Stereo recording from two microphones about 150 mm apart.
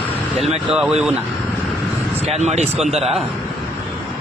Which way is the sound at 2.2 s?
45° right (ahead or behind).